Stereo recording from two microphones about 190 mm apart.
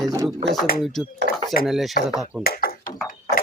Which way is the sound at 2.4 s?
50° left (ahead or behind).